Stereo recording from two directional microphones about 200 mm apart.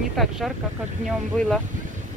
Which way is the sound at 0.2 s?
Centre (ahead or behind).